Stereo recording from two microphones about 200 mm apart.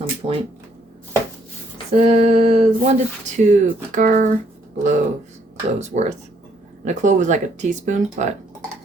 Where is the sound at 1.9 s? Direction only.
30° right (ahead or behind).